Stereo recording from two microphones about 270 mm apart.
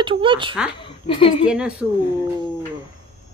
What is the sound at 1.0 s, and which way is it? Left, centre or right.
Speech, centre.